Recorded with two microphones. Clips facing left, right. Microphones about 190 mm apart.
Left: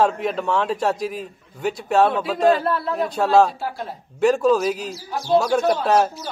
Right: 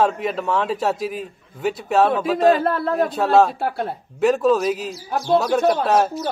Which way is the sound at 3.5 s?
60° right (ahead or behind).